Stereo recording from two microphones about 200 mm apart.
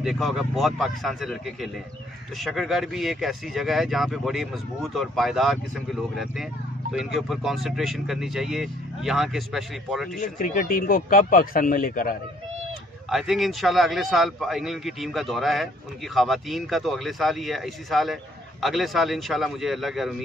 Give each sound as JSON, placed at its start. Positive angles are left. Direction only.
{"t": 0.0, "sound": "speech", "side_deg": 0}
{"t": 6.9, "sound": "speech", "side_deg": 0}
{"t": 10.2, "sound": "speech", "side_deg": 45}
{"t": 13.1, "sound": "speech", "side_deg": 0}